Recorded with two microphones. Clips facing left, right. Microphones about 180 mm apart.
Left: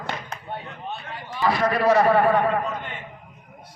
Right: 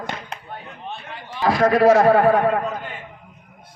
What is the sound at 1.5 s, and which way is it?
Speech, 45° right (ahead or behind).